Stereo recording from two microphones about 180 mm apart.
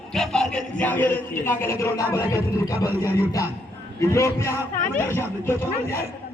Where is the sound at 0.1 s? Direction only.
5° left (ahead or behind).